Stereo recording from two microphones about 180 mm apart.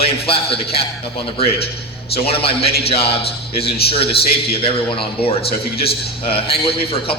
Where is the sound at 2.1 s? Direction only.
30° left (ahead or behind).